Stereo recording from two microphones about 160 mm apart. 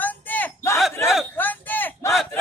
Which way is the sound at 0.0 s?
10° left (ahead or behind).